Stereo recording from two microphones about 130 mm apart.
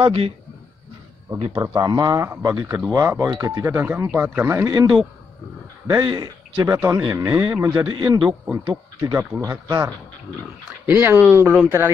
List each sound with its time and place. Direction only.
0.0 s a man's voice: 45° right (ahead or behind)
1.5 s a man's voice: 30° right (ahead or behind)
6.7 s speech: 20° right (ahead or behind)
7.9 s a man's voice: 30° right (ahead or behind)
10.9 s speech: 15° right (ahead or behind)